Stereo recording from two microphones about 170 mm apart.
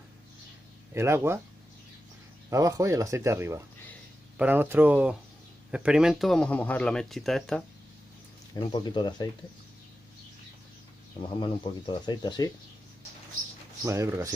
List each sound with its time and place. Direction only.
0.9 s speech: 15° right (ahead or behind)
2.5 s speech: 20° right (ahead or behind); by 7.6 s 5° left (ahead or behind)
8.5 s speech: 25° left (ahead or behind)
11.1 s speech: 30° left (ahead or behind)
13.8 s speech: 15° right (ahead or behind)